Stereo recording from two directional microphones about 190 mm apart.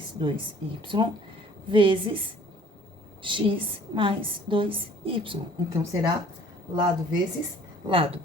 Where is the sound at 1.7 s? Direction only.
25° right (ahead or behind).